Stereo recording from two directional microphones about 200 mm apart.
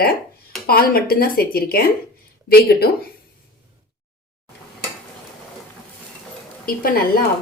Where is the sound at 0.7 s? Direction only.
50° left (ahead or behind).